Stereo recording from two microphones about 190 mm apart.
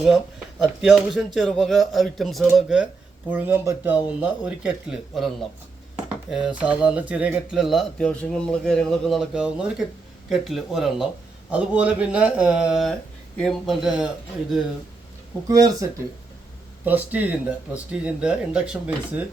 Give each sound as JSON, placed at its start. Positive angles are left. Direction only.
{"t": 0.0, "sound": "speech", "side_deg": 0}
{"t": 15.4, "sound": "speech", "side_deg": -20}